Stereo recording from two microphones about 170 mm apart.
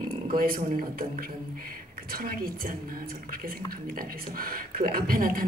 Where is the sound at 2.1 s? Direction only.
60° right (ahead or behind).